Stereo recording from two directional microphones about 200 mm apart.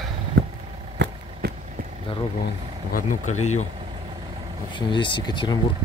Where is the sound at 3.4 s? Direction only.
35° left (ahead or behind).